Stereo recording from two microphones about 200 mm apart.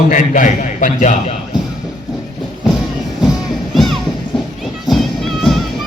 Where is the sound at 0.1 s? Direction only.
40° left (ahead or behind).